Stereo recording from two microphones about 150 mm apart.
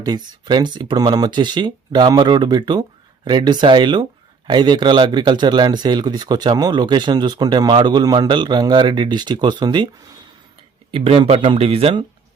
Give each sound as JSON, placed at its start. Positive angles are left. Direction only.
{"t": 0.0, "sound": "speech", "side_deg": -25}
{"t": 10.9, "sound": "speech", "side_deg": -40}